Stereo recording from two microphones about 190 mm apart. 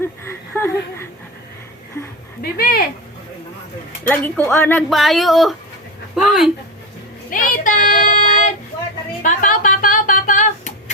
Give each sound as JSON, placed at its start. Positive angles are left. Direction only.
{"t": 0.3, "sound": "a sound", "side_deg": 15}
{"t": 2.4, "sound": "a sound", "side_deg": 50}
{"t": 4.0, "sound": "speech", "side_deg": 10}
{"t": 4.9, "sound": "speech", "side_deg": 0}
{"t": 7.3, "sound": "child singing", "side_deg": 45}
{"t": 9.2, "sound": "music", "side_deg": 40}